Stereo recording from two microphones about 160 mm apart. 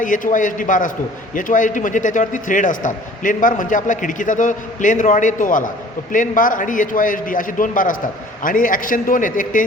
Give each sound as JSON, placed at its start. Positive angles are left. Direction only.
{"t": 0.0, "sound": "a man's voice", "side_deg": 55}